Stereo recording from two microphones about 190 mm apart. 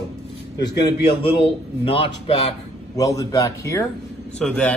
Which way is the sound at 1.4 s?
30° left (ahead or behind).